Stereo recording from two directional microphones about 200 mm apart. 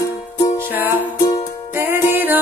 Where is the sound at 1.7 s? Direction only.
10° right (ahead or behind).